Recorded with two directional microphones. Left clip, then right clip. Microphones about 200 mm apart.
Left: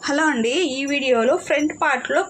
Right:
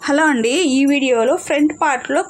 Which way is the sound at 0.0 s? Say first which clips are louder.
Right 4 dB; 50° right (ahead or behind).